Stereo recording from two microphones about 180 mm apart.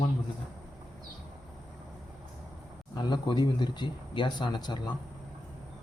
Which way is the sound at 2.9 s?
25° left (ahead or behind).